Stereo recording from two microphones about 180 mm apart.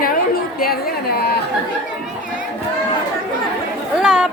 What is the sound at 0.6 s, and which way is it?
Speech, 60° left (ahead or behind).